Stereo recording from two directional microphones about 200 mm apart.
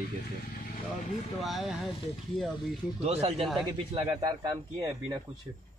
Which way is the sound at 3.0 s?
30° right (ahead or behind).